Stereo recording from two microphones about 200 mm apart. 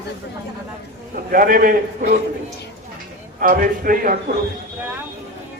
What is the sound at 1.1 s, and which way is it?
A man's voice, 45° right (ahead or behind).